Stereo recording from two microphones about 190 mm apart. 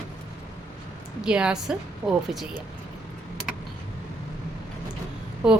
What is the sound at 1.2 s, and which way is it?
A woman's voice, 5° right (ahead or behind).